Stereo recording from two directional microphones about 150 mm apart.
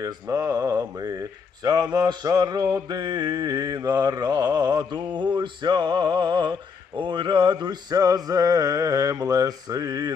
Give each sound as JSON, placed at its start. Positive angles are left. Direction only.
{"t": 0.0, "sound": "speech", "side_deg": -25}